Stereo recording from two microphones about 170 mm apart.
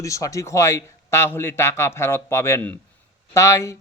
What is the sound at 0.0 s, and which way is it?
Speech, 20° left (ahead or behind).